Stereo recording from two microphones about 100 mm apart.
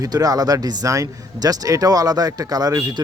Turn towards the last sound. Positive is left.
turn(degrees=-40)  # may be behind; listen again after turning